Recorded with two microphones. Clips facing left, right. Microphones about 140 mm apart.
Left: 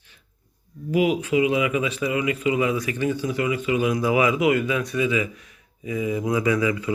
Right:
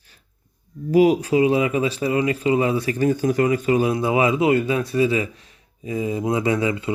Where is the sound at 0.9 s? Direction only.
40° right (ahead or behind).